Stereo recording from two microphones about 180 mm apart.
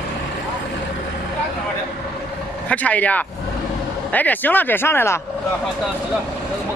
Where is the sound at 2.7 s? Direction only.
10° left (ahead or behind).